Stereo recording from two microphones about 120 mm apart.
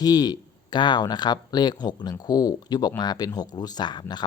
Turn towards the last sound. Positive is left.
turn(degrees=35)  # may be behind; listen again after turning